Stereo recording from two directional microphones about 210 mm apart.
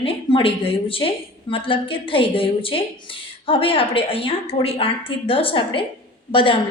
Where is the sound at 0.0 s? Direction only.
25° left (ahead or behind).